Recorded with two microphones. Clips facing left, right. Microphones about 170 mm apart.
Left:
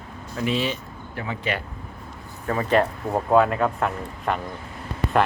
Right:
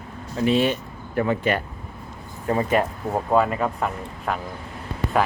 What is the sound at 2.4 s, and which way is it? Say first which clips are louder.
Speech: right 3 dB; 25° right (ahead or behind).